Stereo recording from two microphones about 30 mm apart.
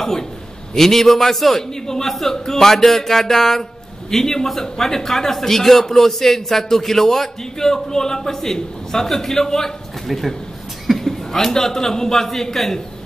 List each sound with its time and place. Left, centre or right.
0.0 s a man's voice: centre
1.6 s a man's voice: centre
10.0 s a man's voice: centre